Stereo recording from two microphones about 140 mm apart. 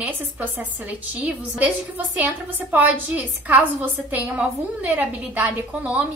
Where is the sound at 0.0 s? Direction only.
10° right (ahead or behind).